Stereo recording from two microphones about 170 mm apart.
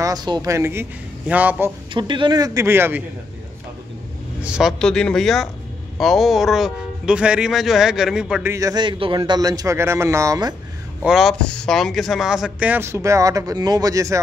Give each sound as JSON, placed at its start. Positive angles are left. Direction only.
{"t": 0.0, "sound": "speech", "side_deg": -25}
{"t": 2.0, "sound": "a man's voice", "side_deg": -25}
{"t": 4.4, "sound": "speech", "side_deg": -5}
{"t": 8.5, "sound": "a man's voice", "side_deg": -20}
{"t": 11.1, "sound": "speech", "side_deg": 0}